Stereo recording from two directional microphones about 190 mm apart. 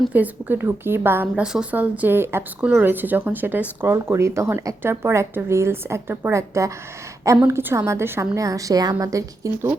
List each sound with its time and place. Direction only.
0.0 s a woman's voice: 10° right (ahead or behind)